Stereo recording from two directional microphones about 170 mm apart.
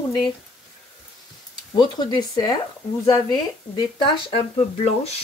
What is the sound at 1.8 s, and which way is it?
Speech, 25° left (ahead or behind).